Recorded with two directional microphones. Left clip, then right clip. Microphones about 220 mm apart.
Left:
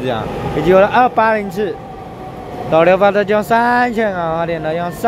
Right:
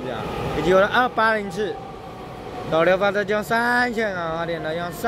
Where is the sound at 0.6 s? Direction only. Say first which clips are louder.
Left 7 dB; 5° left (ahead or behind).